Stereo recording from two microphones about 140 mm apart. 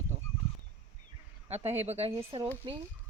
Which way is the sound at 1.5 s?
50° right (ahead or behind).